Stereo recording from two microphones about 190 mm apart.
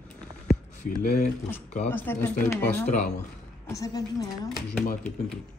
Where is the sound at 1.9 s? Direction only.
10° left (ahead or behind).